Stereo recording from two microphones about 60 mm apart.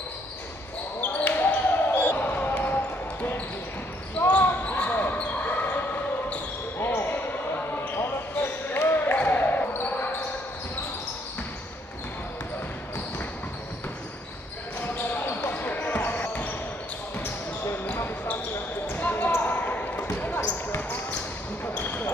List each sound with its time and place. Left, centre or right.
1.2 s basketball bounce: left
4.3 s basketball bounce: left
6.8 s basketball bounce: left
14.8 s basketball bounce: left
17.9 s basketball bounce: left
21.7 s basketball bounce: left